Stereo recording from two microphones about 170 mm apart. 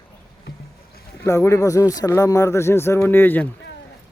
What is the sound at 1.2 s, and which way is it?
Speech, 15° left (ahead or behind).